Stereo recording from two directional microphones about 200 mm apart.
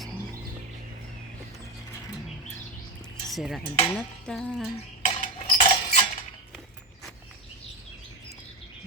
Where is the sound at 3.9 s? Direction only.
Centre (ahead or behind).